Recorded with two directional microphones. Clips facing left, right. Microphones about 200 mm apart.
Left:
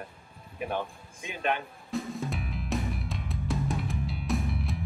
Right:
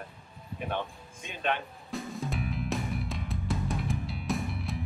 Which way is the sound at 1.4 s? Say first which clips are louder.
Left 1 dB; centre (ahead or behind).